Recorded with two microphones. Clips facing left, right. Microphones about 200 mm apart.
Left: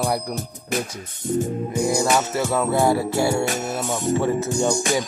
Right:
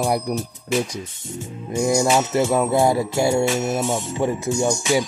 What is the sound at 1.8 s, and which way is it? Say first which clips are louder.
Music: right 3 dB; 35° left (ahead or behind).